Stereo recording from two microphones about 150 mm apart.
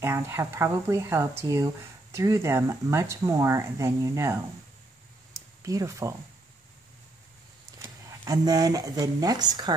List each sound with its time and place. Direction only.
0.0 s speech: 15° right (ahead or behind)
5.7 s speech: 20° right (ahead or behind)
8.1 s speech: 25° right (ahead or behind)